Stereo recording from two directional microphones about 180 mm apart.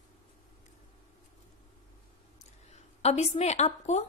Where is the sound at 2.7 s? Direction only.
40° left (ahead or behind).